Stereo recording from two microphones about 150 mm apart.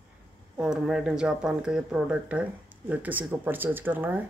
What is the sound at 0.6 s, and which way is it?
Speech, 5° right (ahead or behind).